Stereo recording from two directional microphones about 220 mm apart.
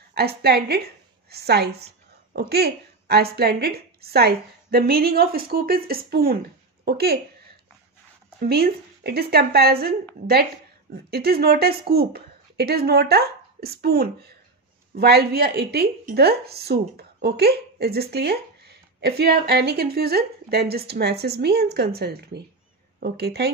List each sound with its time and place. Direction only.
0.1 s a woman's voice: 45° right (ahead or behind)
8.4 s a woman's voice: 45° right (ahead or behind)
11.1 s a woman's voice: 45° right (ahead or behind)